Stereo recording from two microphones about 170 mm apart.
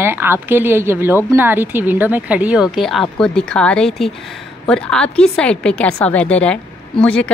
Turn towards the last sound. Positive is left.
turn(degrees=5)  # may be behind; listen again after turning